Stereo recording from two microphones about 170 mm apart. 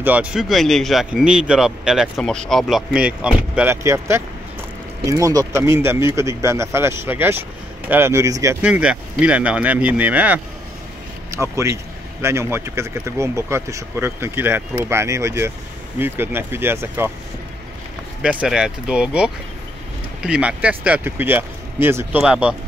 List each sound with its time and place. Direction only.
0.0 s speech: 10° right (ahead or behind)
8.6 s speech: 5° right (ahead or behind)
18.2 s speech: 5° right (ahead or behind)